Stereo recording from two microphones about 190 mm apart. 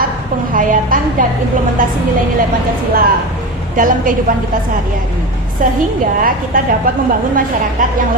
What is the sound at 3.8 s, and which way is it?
Speech, 45° right (ahead or behind).